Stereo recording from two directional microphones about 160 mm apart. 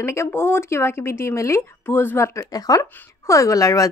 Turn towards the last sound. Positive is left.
turn(degrees=20)  # may be behind; listen again after turning